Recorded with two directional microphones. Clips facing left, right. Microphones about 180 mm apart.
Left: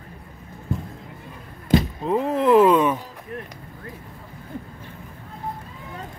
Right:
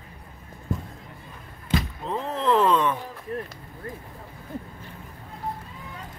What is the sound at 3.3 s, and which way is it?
Speech, 35° right (ahead or behind).